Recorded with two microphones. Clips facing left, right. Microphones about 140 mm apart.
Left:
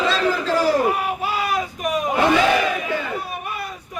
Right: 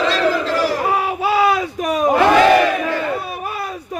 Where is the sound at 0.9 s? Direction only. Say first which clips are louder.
Right 6 dB; 90° right; by 2.1 s 70° right (ahead or behind).